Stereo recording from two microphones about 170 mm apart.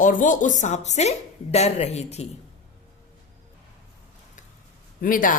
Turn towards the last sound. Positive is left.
turn(degrees=55)  # may be behind; listen again after turning